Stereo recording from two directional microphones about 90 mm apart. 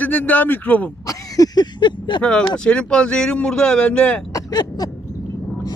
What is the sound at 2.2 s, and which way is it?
Speech, 10° left (ahead or behind).